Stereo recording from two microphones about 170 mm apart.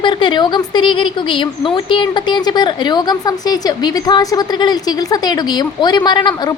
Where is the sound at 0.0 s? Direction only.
30° left (ahead or behind).